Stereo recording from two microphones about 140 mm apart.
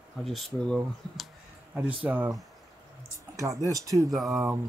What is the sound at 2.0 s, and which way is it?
Speech, 15° right (ahead or behind).